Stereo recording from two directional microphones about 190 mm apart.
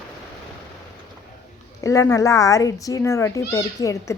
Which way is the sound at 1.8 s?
15° left (ahead or behind).